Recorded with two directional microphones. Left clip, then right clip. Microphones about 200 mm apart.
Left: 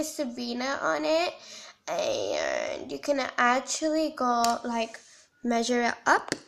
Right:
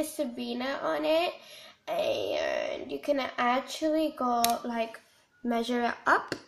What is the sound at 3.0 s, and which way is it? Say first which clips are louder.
Speech: left 3 dB; 10° left (ahead or behind).